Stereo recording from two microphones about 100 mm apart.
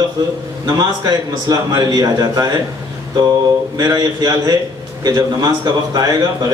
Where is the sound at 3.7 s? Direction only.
40° right (ahead or behind).